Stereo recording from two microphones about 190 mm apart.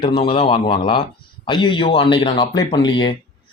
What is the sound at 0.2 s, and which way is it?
Speech, 30° left (ahead or behind).